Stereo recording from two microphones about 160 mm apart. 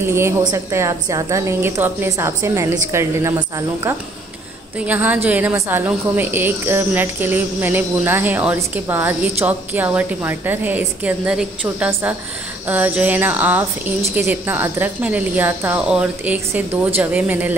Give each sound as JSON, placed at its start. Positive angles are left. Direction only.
{"t": 0.0, "sound": "a woman's voice", "side_deg": -15}